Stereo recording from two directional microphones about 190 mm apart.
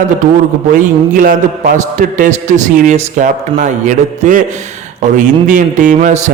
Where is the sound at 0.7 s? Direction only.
45° right (ahead or behind).